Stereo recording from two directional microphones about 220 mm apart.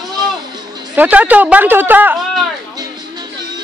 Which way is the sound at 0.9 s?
5° right (ahead or behind).